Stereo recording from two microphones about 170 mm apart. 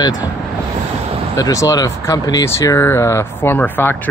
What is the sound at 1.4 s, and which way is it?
Speech, 20° left (ahead or behind).